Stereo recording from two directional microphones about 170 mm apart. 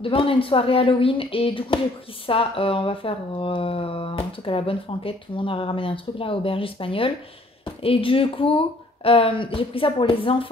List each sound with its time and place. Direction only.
0.0 s speech: 30° left (ahead or behind)